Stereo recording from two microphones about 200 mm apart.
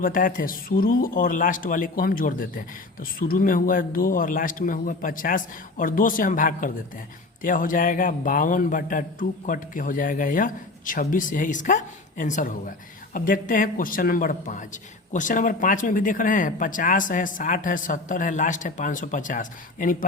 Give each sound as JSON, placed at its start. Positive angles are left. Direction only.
{"t": 0.0, "sound": "speech", "side_deg": 45}